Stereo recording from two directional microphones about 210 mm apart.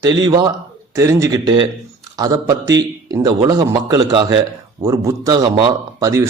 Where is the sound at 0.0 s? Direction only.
20° right (ahead or behind).